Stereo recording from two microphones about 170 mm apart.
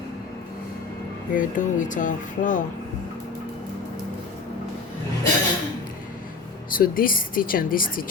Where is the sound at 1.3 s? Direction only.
50° left (ahead or behind).